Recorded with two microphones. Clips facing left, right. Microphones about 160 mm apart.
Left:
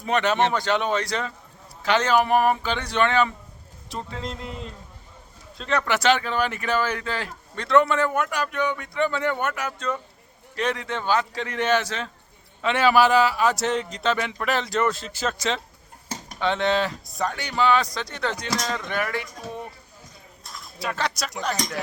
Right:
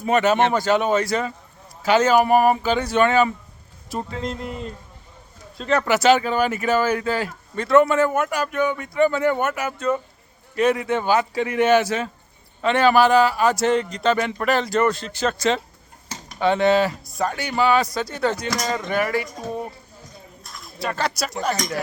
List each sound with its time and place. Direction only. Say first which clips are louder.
0.0 s a man's voice: right 4 dB; 5° right (ahead or behind)
12.6 s speech: right 3 dB; 5° left (ahead or behind)
19.5 s speech: right 6 dB; 40° right (ahead or behind)
20.7 s speech: right 3 dB; centre (ahead or behind)